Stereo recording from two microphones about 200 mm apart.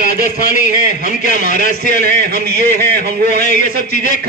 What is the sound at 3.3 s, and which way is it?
Speech, 40° left (ahead or behind).